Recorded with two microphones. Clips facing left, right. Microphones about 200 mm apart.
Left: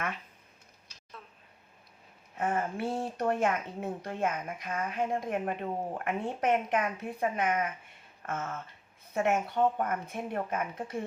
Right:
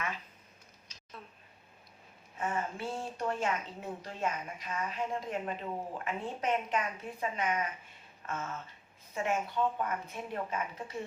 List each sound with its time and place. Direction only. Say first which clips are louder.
2.4 s speech: left 4 dB; 55° left (ahead or behind)
9.1 s speech: left 4 dB; 60° left (ahead or behind)